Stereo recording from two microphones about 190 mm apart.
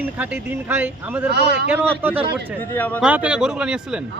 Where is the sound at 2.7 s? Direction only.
10° left (ahead or behind).